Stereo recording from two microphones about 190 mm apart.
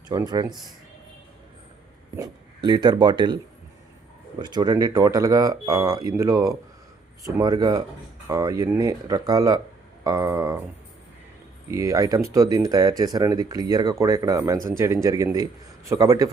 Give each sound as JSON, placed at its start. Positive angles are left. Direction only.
{"t": 0.1, "sound": "speech", "side_deg": -20}
{"t": 2.1, "sound": "speech", "side_deg": -20}
{"t": 4.4, "sound": "speech", "side_deg": -20}
{"t": 11.7, "sound": "speech", "side_deg": -15}